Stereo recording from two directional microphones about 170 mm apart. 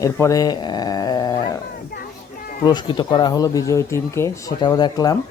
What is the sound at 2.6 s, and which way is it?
Speech, 25° left (ahead or behind).